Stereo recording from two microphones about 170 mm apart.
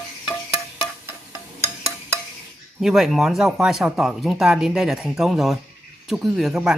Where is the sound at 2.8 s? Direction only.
Centre (ahead or behind).